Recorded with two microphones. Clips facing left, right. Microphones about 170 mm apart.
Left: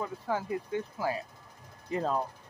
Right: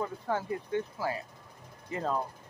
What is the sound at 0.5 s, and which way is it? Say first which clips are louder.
Speech: right 1 dB; 20° left (ahead or behind).